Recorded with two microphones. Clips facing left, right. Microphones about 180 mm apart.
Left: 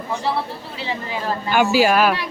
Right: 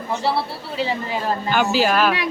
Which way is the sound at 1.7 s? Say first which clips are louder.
Left 3 dB; 10° left (ahead or behind).